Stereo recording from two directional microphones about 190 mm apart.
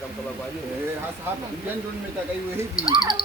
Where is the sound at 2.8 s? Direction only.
20° left (ahead or behind).